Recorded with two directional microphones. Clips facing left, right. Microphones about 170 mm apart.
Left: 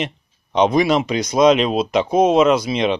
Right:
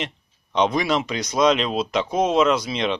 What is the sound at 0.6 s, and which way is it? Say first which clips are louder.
Speech: left 5 dB; 15° left (ahead or behind).